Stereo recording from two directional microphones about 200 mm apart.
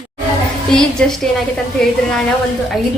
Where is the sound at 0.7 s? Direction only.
5° left (ahead or behind).